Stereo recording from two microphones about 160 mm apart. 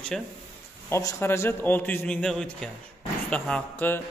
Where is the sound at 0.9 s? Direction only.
20° left (ahead or behind).